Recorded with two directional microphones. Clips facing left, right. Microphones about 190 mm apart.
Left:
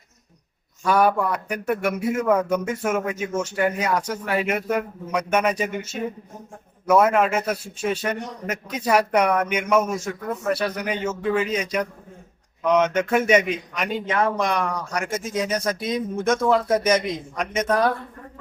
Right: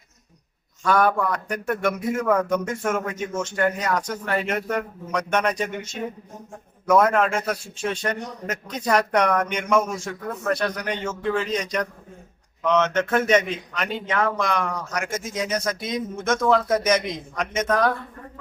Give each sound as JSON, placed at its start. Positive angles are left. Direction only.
{"t": 0.9, "sound": "speech", "side_deg": 10}
{"t": 14.9, "sound": "speech", "side_deg": 30}
{"t": 16.2, "sound": "speech", "side_deg": 10}
{"t": 17.7, "sound": "speech", "side_deg": 30}